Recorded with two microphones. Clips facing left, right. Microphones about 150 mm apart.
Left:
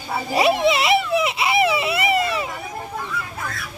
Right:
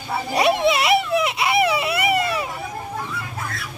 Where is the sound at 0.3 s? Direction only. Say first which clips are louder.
Left 1 dB; centre (ahead or behind).